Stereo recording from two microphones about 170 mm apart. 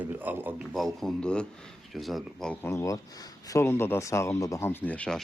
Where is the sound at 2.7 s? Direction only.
20° left (ahead or behind).